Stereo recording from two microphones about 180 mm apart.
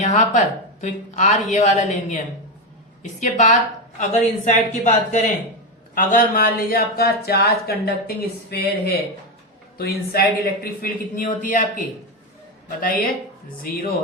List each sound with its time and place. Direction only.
0.0 s speech: 45° left (ahead or behind)
12.6 s speech: 55° left (ahead or behind)